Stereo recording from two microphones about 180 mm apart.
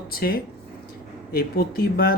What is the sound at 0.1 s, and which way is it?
Speech, 55° left (ahead or behind).